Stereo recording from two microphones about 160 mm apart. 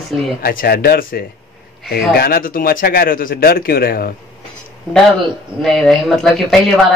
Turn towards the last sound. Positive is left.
turn(degrees=0)  # may be behind; listen again after turning